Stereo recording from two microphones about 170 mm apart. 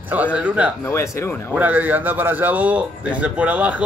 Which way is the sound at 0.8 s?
15° left (ahead or behind).